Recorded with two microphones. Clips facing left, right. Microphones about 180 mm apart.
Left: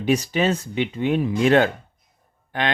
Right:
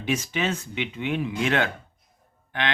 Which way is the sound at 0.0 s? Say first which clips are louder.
Left 6 dB; 35° left (ahead or behind).